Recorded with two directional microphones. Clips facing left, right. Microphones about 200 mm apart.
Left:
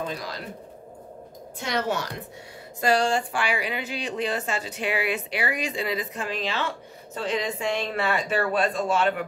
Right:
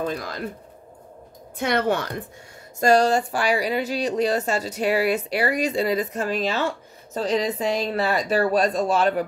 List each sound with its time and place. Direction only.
0.0 s speech: 50° right (ahead or behind)
1.6 s a woman's voice: 55° right (ahead or behind)
2.8 s speech: 40° right (ahead or behind)